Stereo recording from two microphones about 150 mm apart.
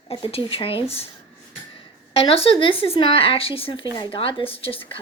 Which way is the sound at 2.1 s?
40° left (ahead or behind).